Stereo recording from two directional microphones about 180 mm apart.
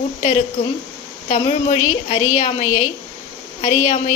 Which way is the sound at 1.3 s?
40° left (ahead or behind).